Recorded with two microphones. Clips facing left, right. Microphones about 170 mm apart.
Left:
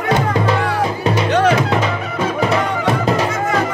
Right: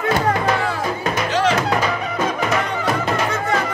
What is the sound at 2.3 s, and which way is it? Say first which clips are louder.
Music: left 4 dB; 30° left (ahead or behind).